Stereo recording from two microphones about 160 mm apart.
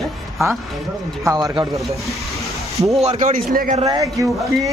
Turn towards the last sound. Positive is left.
turn(degrees=-20)  # may be behind; listen again after turning